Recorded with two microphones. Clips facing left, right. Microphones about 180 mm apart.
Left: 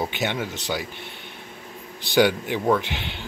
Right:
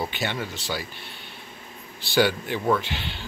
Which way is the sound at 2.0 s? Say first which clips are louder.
Left 3 dB; 15° left (ahead or behind).